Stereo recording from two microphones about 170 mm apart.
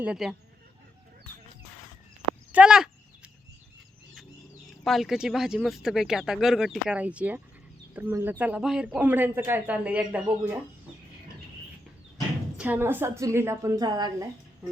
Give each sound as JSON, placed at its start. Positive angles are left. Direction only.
{"t": 0.0, "sound": "speech", "side_deg": -5}
{"t": 2.5, "sound": "speech", "side_deg": -5}
{"t": 4.8, "sound": "speech", "side_deg": 0}
{"t": 12.5, "sound": "speech", "side_deg": -10}